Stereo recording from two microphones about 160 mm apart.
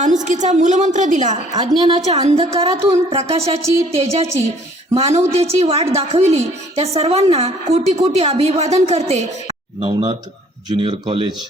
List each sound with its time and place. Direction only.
0.0 s a woman's voice: 50° right (ahead or behind)
1.8 s a woman's voice: 40° right (ahead or behind)